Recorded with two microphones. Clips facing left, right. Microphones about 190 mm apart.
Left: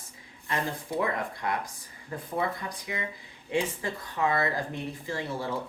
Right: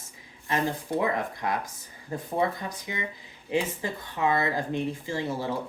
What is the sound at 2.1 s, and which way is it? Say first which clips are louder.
Speech: right 3 dB; 25° right (ahead or behind).